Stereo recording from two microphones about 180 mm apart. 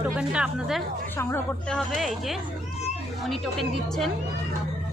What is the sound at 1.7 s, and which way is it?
A woman's voice, centre (ahead or behind).